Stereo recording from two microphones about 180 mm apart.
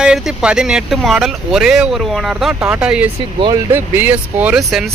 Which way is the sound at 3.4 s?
25° right (ahead or behind).